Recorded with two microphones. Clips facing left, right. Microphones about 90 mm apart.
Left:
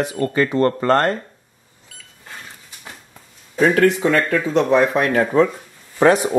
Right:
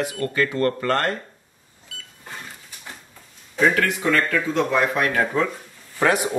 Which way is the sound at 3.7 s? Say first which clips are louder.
Left 6 dB; 30° left (ahead or behind).